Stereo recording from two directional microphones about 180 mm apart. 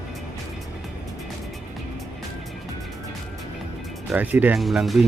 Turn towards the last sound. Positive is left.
turn(degrees=0)  # may be behind; listen again after turning